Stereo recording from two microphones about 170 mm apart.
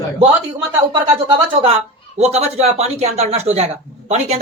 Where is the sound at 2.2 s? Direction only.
40° right (ahead or behind).